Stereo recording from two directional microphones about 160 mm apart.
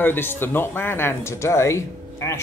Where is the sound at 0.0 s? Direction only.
15° left (ahead or behind).